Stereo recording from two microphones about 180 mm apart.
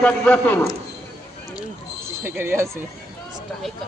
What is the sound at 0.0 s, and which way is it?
Speech, 10° left (ahead or behind).